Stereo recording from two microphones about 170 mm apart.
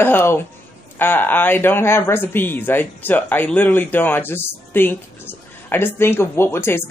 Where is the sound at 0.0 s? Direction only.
15° left (ahead or behind).